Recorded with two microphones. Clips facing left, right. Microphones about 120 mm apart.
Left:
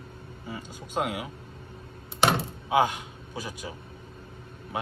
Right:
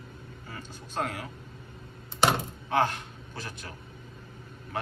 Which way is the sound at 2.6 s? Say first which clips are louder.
Left 3 dB; 10° left (ahead or behind).